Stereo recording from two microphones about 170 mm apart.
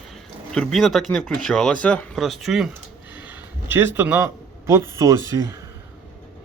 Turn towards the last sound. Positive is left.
turn(degrees=-20)  # may be behind; listen again after turning